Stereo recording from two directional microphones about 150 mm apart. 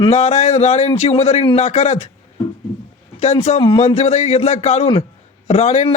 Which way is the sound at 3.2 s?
45° left (ahead or behind).